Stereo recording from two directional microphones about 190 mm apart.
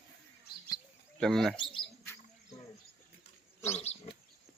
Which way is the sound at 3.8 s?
35° left (ahead or behind).